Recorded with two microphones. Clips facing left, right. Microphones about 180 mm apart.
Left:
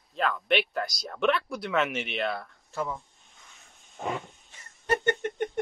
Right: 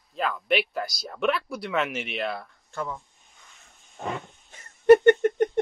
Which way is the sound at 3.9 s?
Centre (ahead or behind).